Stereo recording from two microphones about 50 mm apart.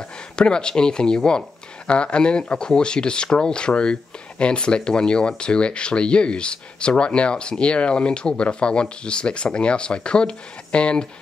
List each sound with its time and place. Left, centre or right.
0.4 s speech: centre